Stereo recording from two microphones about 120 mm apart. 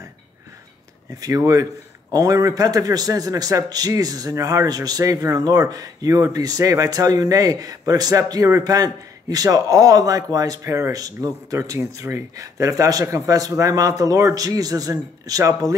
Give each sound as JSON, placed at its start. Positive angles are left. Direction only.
{"t": 1.2, "sound": "a man's voice", "side_deg": -30}